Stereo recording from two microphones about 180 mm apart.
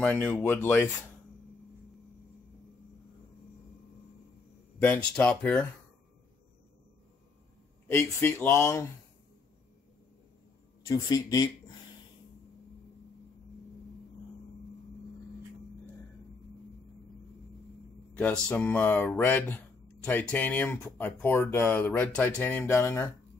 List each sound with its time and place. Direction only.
0.0 s speech: 5° left (ahead or behind)
4.7 s speech: 10° left (ahead or behind)
7.9 s speech: 15° left (ahead or behind)
10.9 s speech: 20° left (ahead or behind)
18.1 s speech: 5° left (ahead or behind)